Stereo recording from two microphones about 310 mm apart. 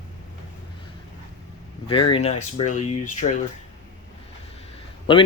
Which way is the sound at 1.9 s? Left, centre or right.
Centre.